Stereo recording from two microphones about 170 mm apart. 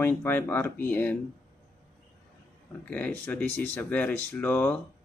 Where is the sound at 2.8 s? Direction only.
10° left (ahead or behind).